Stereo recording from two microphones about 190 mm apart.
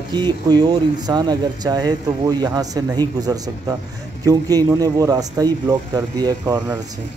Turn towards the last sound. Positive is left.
turn(degrees=-20)  # may be behind; listen again after turning